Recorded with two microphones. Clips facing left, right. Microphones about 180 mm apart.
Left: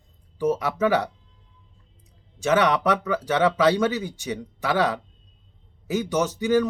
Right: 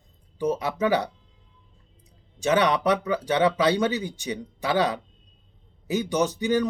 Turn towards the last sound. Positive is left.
turn(degrees=-20)  # may be behind; listen again after turning